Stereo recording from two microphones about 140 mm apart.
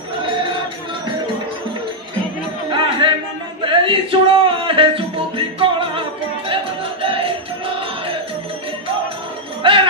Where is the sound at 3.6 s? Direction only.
35° right (ahead or behind).